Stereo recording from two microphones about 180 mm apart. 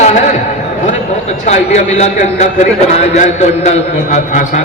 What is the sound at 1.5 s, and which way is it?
A man's voice, 40° left (ahead or behind).